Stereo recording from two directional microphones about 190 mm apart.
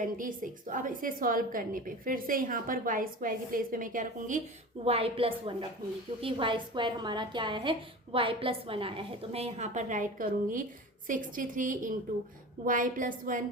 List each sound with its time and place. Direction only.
0.2 s a woman's voice: 45° right (ahead or behind)
4.9 s a woman's voice: 30° right (ahead or behind)